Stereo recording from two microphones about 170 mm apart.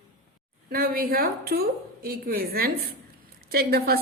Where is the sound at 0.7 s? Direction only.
60° right (ahead or behind).